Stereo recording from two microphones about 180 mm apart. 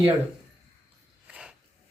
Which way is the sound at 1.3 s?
5° right (ahead or behind).